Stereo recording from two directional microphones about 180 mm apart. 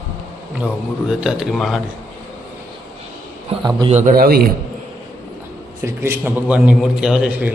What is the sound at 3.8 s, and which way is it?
Speech, 30° right (ahead or behind).